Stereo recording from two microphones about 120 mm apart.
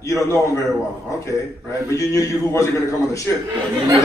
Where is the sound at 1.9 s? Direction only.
25° left (ahead or behind).